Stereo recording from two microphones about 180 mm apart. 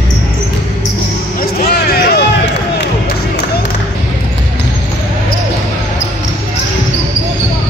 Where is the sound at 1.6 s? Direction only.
60° left (ahead or behind).